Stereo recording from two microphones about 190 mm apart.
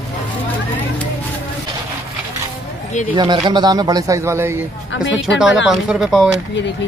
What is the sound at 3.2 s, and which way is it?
Speech, 25° right (ahead or behind).